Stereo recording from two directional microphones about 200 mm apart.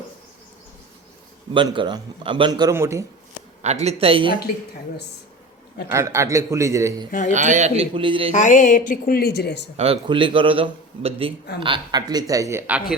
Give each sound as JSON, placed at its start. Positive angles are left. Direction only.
{"t": 1.5, "sound": "a man's voice", "side_deg": -25}
{"t": 3.6, "sound": "a man's voice", "side_deg": -35}
{"t": 5.9, "sound": "a man's voice", "side_deg": -15}
{"t": 7.1, "sound": "speech", "side_deg": 40}
{"t": 7.3, "sound": "a man's voice", "side_deg": -35}
{"t": 8.3, "sound": "speech", "side_deg": 40}
{"t": 9.7, "sound": "a man's voice", "side_deg": -30}